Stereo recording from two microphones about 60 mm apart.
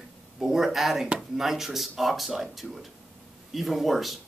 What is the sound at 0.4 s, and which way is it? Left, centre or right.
Speech, centre.